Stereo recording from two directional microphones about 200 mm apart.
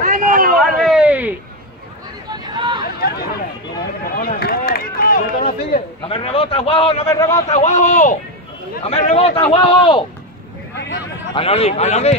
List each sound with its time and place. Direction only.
0.0 s a sound: 40° right (ahead or behind)
0.6 s a sound: centre (ahead or behind)
2.3 s hubbub: 20° right (ahead or behind)
4.0 s run: 50° left (ahead or behind)
6.0 s speech: 25° left (ahead or behind)
7.1 s a man's voice: 15° left (ahead or behind)
7.4 s speech: 35° left (ahead or behind)
11.3 s speech: 30° left (ahead or behind)